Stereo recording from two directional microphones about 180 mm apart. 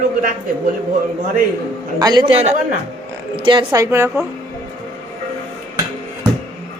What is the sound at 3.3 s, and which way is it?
Speech, 25° right (ahead or behind).